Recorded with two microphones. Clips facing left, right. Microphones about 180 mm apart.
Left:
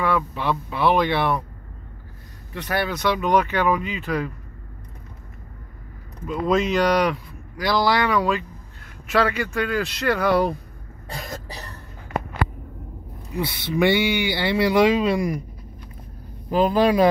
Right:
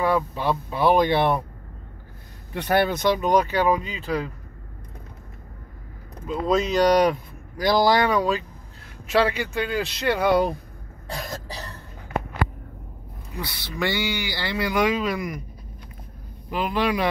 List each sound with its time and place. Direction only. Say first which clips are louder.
0.0 s speech: right 1 dB; 40° right (ahead or behind)
2.5 s speech: right 4 dB; 60° right (ahead or behind); by 4.3 s 30° right (ahead or behind)
6.2 s speech: left 1 dB; 35° right (ahead or behind)
9.0 s speech: even; 30° right (ahead or behind)
13.4 s speech: left 7 dB; 20° left (ahead or behind)
16.4 s speech: left 6 dB; 40° left (ahead or behind)